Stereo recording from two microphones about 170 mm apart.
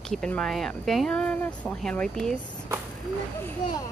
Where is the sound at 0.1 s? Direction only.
5° left (ahead or behind).